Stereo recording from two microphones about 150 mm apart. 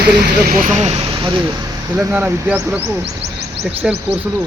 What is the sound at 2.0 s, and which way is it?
Speech, 15° right (ahead or behind).